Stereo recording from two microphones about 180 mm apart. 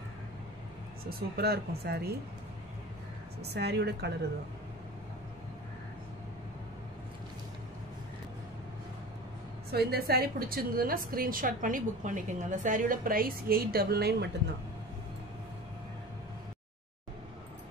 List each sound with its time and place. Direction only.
1.3 s speech: 60° right (ahead or behind)
3.4 s speech: 65° right (ahead or behind)
9.7 s a woman's voice: 60° right (ahead or behind)